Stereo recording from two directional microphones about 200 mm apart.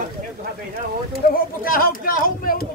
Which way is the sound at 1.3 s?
45° left (ahead or behind).